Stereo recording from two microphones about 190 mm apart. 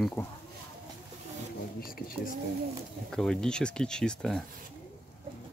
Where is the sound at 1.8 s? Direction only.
50° left (ahead or behind).